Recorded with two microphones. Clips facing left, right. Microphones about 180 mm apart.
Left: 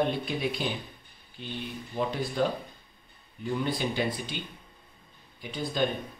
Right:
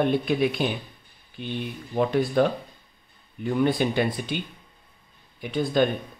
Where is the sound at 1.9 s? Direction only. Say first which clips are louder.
Right 8 dB; 60° right (ahead or behind).